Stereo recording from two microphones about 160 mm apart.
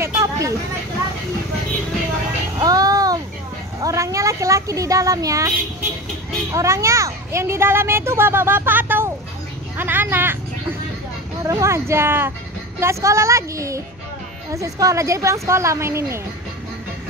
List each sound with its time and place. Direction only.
0.0 s vehicle: 20° right (ahead or behind)
2.6 s music: 20° right (ahead or behind)
3.8 s speech: 20° right (ahead or behind)
6.5 s a child's voice: 20° right (ahead or behind)
11.4 s a child's voice: 20° right (ahead or behind)